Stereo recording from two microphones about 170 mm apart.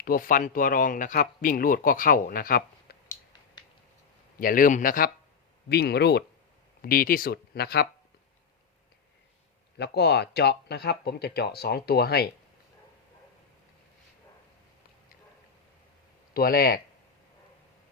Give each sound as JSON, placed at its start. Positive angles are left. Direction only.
{"t": 0.0, "sound": "speech", "side_deg": 55}
{"t": 4.4, "sound": "speech", "side_deg": 55}
{"t": 5.6, "sound": "speech", "side_deg": 70}
{"t": 6.8, "sound": "speech", "side_deg": 55}
{"t": 9.7, "sound": "speech", "side_deg": 75}
{"t": 16.3, "sound": "speech", "side_deg": 60}